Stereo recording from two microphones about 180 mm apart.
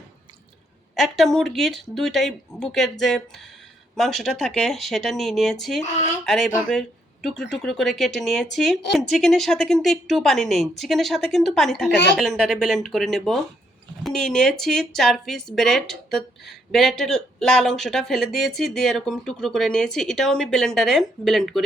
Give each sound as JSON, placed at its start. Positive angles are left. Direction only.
{"t": 0.9, "sound": "speech", "side_deg": 0}